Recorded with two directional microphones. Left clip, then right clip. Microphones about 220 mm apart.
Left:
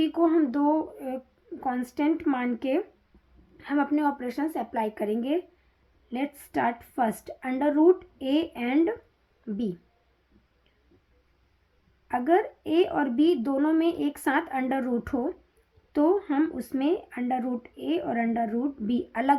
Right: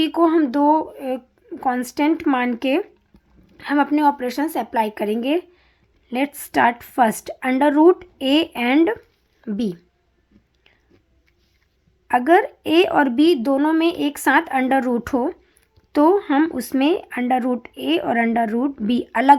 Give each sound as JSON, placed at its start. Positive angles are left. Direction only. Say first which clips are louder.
{"t": 0.0, "sound": "speech", "louder": "right 6 dB", "side_deg": -20}
{"t": 12.0, "sound": "speech", "louder": "right 9 dB", "side_deg": -25}